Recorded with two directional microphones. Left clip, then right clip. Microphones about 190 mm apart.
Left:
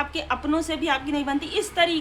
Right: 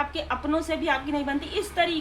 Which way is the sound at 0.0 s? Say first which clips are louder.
Left 2 dB; 20° left (ahead or behind).